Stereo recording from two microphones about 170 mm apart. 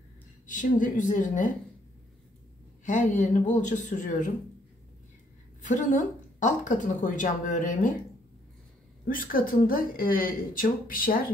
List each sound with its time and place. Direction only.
0.5 s a woman's voice: 50° left (ahead or behind)
2.8 s a woman's voice: 50° left (ahead or behind)
5.6 s a woman's voice: 45° left (ahead or behind)
9.0 s a woman's voice: 55° left (ahead or behind)